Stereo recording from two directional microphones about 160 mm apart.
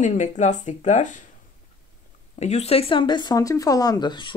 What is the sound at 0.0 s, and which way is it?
Speech, 50° left (ahead or behind).